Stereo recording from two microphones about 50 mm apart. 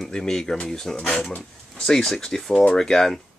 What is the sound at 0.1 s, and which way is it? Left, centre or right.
Speech, centre.